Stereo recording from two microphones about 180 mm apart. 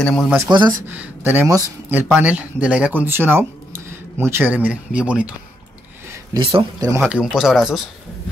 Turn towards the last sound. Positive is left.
turn(degrees=0)  # may be behind; listen again after turning